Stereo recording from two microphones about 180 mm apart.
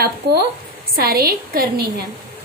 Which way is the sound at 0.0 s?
65° right (ahead or behind).